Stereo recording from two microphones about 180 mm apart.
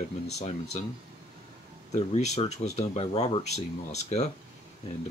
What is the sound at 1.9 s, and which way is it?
Speech, 40° left (ahead or behind).